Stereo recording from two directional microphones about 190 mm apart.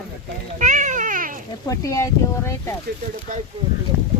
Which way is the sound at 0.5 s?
40° right (ahead or behind).